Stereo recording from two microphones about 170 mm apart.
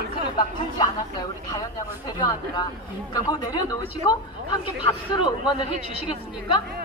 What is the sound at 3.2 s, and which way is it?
Speech, 25° left (ahead or behind).